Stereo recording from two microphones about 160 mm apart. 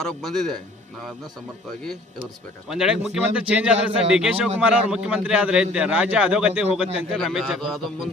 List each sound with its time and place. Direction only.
0.0 s a man's voice: centre (ahead or behind)
2.6 s a man's voice: 5° right (ahead or behind)